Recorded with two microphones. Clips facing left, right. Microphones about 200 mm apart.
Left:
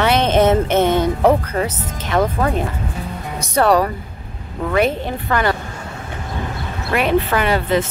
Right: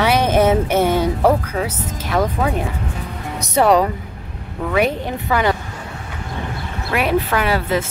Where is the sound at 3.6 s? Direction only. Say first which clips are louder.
Right 1 dB; 20° right (ahead or behind).